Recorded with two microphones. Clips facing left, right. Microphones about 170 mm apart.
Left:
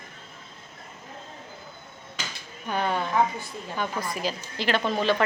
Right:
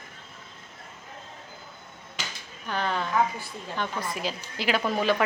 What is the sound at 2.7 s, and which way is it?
A woman's voice, 10° left (ahead or behind).